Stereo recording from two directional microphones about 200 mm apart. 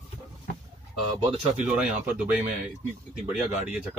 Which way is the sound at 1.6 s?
5° right (ahead or behind).